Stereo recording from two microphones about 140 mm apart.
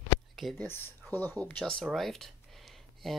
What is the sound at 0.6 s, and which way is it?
Speech, 15° left (ahead or behind).